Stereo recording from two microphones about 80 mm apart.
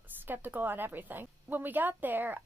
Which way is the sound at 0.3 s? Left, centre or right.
Right.